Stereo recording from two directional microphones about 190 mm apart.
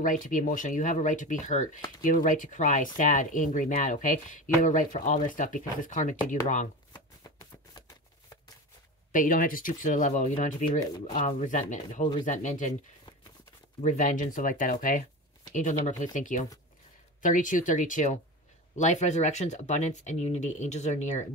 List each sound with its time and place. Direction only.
0.0 s speech: 45° left (ahead or behind)
9.1 s speech: 45° left (ahead or behind)
13.7 s speech: 40° left (ahead or behind)